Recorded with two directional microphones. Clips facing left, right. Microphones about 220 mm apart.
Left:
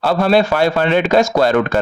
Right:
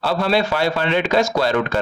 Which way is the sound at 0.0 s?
50° left (ahead or behind).